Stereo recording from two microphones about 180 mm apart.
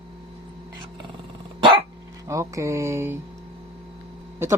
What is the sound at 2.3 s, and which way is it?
Mantra, 15° right (ahead or behind).